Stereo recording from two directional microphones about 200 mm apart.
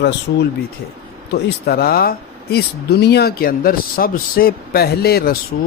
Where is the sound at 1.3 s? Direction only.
50° left (ahead or behind).